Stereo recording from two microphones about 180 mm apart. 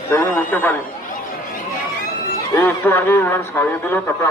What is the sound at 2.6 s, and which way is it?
A man's voice, 10° left (ahead or behind).